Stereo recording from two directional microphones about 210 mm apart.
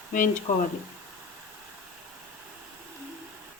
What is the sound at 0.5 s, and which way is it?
Speech, 40° left (ahead or behind).